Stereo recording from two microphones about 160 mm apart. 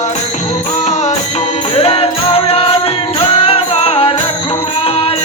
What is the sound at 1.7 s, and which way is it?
Music, 35° left (ahead or behind).